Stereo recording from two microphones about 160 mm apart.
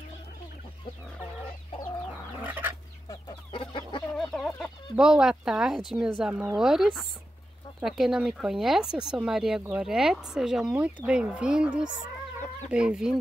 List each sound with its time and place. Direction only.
3.1 s chicken: 30° left (ahead or behind)
4.3 s chicken: 5° left (ahead or behind)
4.9 s speech: 5° right (ahead or behind)